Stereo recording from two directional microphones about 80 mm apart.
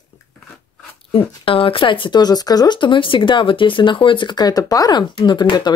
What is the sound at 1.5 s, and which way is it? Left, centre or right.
Speech, left.